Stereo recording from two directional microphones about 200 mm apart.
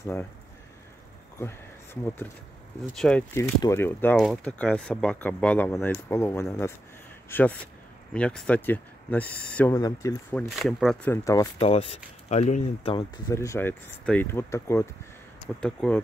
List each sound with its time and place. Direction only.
0.0 s speech: 10° left (ahead or behind)
2.9 s speech: 5° left (ahead or behind)
9.8 s speech: 20° left (ahead or behind)
10.3 s speech: centre (ahead or behind)
11.6 s speech: 30° left (ahead or behind)
13.3 s speech: 15° left (ahead or behind)